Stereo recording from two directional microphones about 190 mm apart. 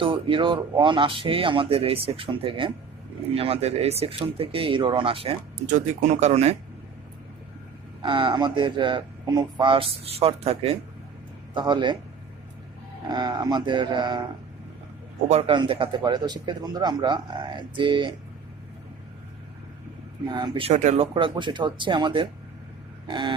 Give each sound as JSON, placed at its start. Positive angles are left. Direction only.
{"t": 0.0, "sound": "speech", "side_deg": -25}
{"t": 8.0, "sound": "speech", "side_deg": -25}
{"t": 13.1, "sound": "speech", "side_deg": -20}
{"t": 15.3, "sound": "speech", "side_deg": -30}
{"t": 20.3, "sound": "speech", "side_deg": -25}
{"t": 20.7, "sound": "speech", "side_deg": -35}